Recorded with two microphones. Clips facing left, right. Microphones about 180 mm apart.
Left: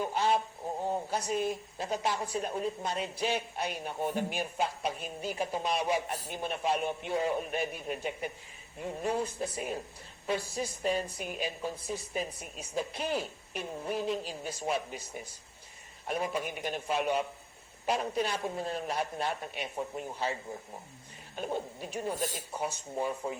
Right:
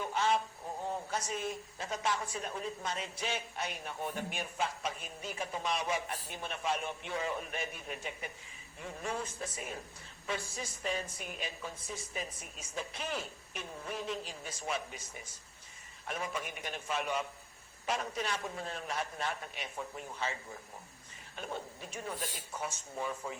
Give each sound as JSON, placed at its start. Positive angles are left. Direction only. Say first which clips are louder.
{"t": 0.0, "sound": "a sound", "louder": "left 3 dB", "side_deg": 35}
{"t": 0.9, "sound": "a man's voice", "louder": "left 5 dB", "side_deg": 35}
{"t": 16.6, "sound": "a man's voice", "louder": "left 5 dB", "side_deg": 40}